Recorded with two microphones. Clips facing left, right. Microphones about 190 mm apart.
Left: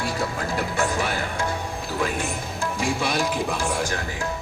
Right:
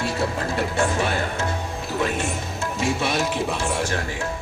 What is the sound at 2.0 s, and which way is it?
Speech, 25° right (ahead or behind).